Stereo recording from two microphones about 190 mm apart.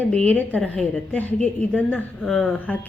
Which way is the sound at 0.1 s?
5° left (ahead or behind).